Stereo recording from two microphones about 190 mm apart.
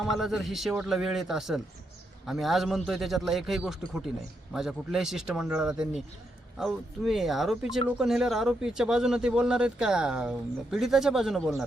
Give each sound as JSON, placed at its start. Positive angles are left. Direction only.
{"t": 0.0, "sound": "speech", "side_deg": 0}